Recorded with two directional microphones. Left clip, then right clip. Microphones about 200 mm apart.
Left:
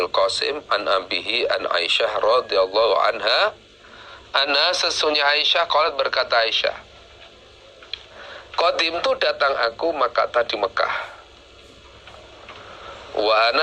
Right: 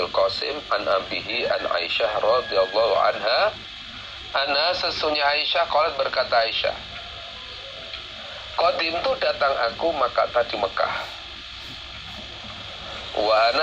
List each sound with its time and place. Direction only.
0.0 s speech: 30° left (ahead or behind)
8.5 s speech: 30° left (ahead or behind)
13.1 s speech: 30° left (ahead or behind)